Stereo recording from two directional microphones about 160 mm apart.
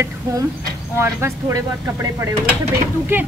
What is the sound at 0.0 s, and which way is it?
A woman's voice, 20° right (ahead or behind).